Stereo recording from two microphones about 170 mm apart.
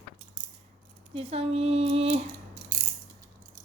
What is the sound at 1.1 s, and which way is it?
Speech, 35° right (ahead or behind).